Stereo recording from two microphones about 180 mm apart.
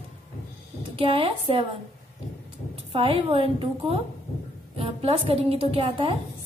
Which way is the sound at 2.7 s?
30° right (ahead or behind).